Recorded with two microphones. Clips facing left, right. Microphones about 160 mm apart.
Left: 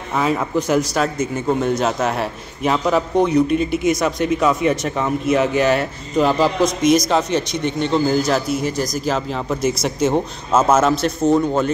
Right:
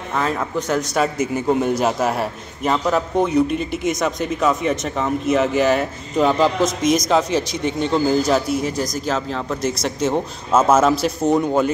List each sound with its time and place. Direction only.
0.2 s speech: 5° left (ahead or behind)
11.2 s speech: 15° right (ahead or behind)